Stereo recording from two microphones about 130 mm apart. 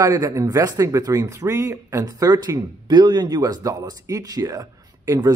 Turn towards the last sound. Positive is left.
turn(degrees=-30)  # may be behind; listen again after turning